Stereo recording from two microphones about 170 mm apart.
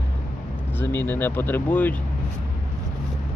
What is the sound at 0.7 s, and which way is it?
Speech, 10° left (ahead or behind).